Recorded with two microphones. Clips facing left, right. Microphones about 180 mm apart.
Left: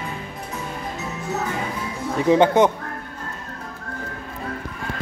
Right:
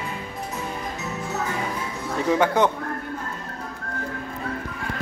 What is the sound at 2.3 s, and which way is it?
Speech, 20° left (ahead or behind).